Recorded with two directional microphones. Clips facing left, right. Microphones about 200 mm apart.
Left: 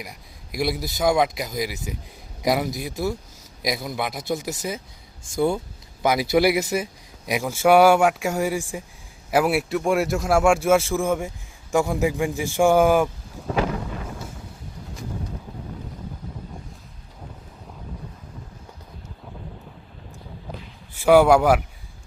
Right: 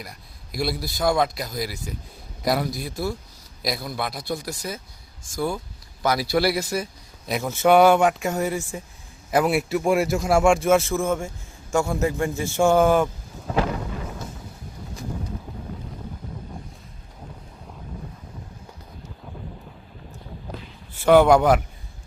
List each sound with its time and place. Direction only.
0.5 s speech: 15° left (ahead or behind)
6.0 s a man's voice: 15° left (ahead or behind)
20.9 s a man's voice: 10° left (ahead or behind)